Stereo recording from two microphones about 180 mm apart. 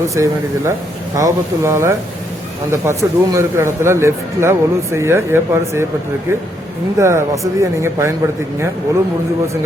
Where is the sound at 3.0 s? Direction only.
10° right (ahead or behind).